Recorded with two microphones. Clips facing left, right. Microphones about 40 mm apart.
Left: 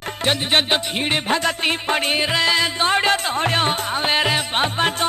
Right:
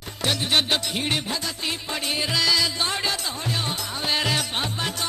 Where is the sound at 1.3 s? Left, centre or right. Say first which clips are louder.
Left 9 dB; left.